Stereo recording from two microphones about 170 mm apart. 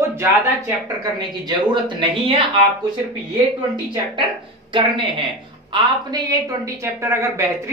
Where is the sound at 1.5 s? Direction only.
25° right (ahead or behind).